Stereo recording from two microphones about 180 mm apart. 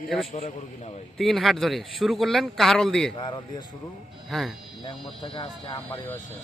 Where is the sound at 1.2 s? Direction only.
Centre (ahead or behind).